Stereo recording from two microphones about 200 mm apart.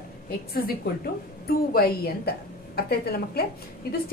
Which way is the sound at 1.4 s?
50° left (ahead or behind).